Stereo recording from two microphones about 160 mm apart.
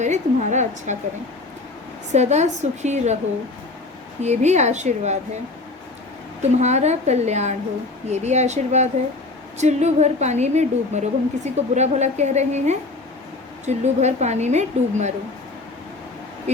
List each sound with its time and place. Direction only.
0.0 s a sound: 45° right (ahead or behind)
2.1 s a woman's voice: 45° right (ahead or behind)
4.2 s a woman's voice: 45° right (ahead or behind)
6.4 s a woman's voice: 45° right (ahead or behind)